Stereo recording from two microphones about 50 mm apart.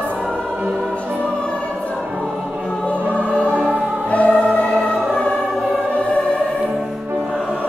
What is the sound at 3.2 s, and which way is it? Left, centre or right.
Music, right.